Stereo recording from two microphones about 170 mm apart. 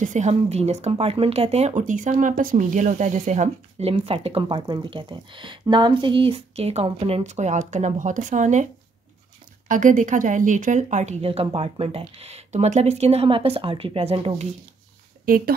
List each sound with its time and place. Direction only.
0.0 s speech: 45° right (ahead or behind)
9.7 s speech: 50° right (ahead or behind); by 14.5 s 35° right (ahead or behind)
15.2 s speech: 55° right (ahead or behind)